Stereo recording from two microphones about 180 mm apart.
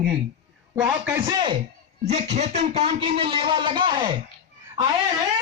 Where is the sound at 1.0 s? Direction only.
20° right (ahead or behind).